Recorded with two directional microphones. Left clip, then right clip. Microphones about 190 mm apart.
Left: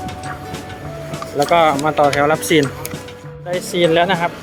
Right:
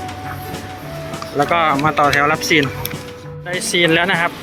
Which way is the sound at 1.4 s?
5° left (ahead or behind).